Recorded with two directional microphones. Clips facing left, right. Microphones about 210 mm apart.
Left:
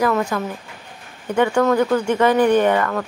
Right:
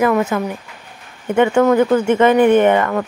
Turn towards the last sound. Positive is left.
turn(degrees=-20)  # may be behind; listen again after turning